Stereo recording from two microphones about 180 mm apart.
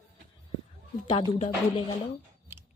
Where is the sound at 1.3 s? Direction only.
35° left (ahead or behind).